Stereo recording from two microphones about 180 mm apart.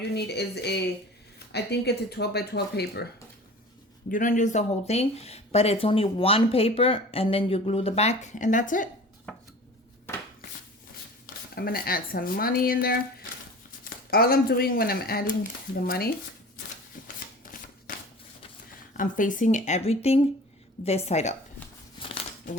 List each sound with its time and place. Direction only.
0.1 s speech: 65° left (ahead or behind)
4.1 s speech: 45° left (ahead or behind)
11.5 s speech: 55° left (ahead or behind)
17.4 s shuffling cards: 50° left (ahead or behind)
18.9 s speech: 45° left (ahead or behind)
21.9 s crumpling: 30° left (ahead or behind)